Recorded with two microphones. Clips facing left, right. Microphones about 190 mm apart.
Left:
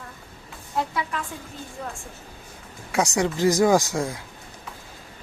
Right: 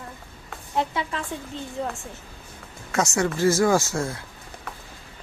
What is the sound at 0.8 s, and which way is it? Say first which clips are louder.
A woman's voice: right 1 dB; 25° right (ahead or behind).